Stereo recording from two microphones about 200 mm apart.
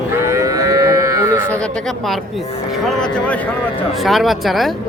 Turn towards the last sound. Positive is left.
turn(degrees=0)  # may be behind; listen again after turning